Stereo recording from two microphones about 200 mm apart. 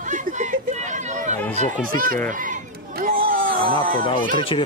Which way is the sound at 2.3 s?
40° right (ahead or behind).